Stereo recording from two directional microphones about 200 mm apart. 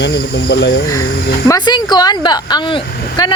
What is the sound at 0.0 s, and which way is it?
Speech, 60° left (ahead or behind).